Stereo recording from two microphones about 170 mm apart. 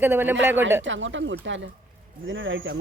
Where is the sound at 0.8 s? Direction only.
90° right.